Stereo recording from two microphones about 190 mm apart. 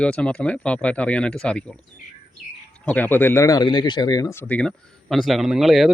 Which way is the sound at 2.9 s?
10° left (ahead or behind).